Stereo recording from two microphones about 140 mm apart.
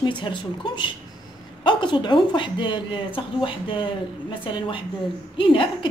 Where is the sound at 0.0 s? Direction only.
35° left (ahead or behind).